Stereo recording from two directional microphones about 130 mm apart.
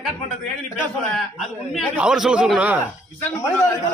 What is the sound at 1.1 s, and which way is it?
A man's voice, centre (ahead or behind).